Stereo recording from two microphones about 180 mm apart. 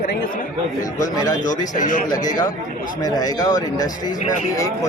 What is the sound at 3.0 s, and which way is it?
A man's voice, 20° left (ahead or behind).